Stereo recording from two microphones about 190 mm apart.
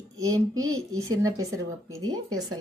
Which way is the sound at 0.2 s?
20° right (ahead or behind).